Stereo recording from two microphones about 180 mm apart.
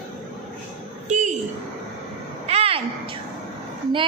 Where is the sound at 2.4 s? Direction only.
35° right (ahead or behind).